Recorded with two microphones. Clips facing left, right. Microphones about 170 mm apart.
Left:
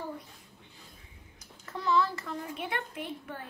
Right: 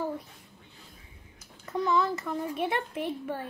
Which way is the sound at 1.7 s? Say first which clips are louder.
Right 2 dB; 20° right (ahead or behind).